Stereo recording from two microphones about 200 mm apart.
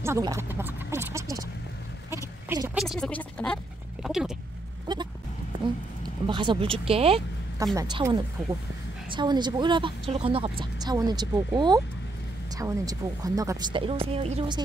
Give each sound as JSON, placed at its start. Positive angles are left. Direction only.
{"t": 0.0, "sound": "a sound", "side_deg": -15}
{"t": 2.8, "sound": "speech", "side_deg": 0}
{"t": 4.0, "sound": "a sound", "side_deg": 0}
{"t": 4.9, "sound": "sheep", "side_deg": -20}
{"t": 6.2, "sound": "speech", "side_deg": -25}
{"t": 7.7, "sound": "speech", "side_deg": -20}